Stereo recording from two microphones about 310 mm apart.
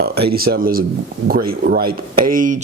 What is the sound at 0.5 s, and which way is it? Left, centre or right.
Speech, right.